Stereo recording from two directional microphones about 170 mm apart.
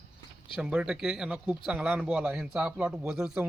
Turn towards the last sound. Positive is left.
turn(degrees=-5)  # may be behind; listen again after turning